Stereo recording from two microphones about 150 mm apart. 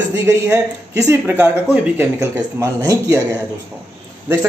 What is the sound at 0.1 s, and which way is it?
A man's voice, 20° right (ahead or behind).